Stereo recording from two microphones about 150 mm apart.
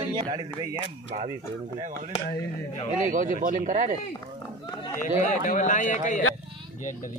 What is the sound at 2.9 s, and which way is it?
Speech, 60° right (ahead or behind).